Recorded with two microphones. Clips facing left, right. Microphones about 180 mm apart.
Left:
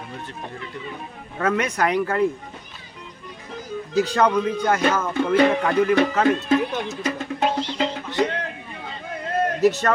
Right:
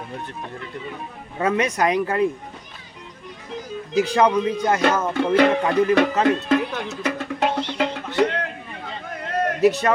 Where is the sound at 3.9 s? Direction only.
10° right (ahead or behind).